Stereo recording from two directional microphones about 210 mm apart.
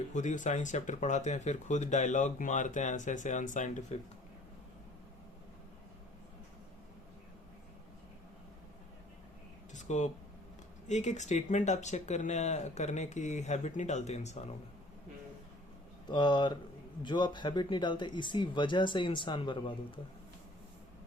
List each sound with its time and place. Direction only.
0.1 s speech: 35° left (ahead or behind)
9.7 s a sound: 35° left (ahead or behind)
10.8 s speech: 35° left (ahead or behind)
16.0 s speech: 20° left (ahead or behind)